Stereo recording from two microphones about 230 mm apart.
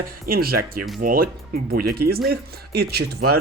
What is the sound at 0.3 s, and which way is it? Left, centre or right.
Speech, right.